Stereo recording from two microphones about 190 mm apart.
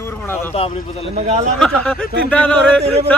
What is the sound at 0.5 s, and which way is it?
Speech, 35° left (ahead or behind).